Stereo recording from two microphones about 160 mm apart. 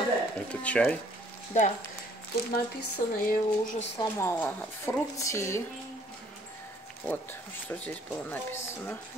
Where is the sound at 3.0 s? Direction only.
55° left (ahead or behind).